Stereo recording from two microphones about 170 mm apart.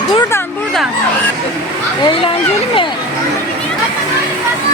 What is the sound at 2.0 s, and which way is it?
Speech, 30° left (ahead or behind).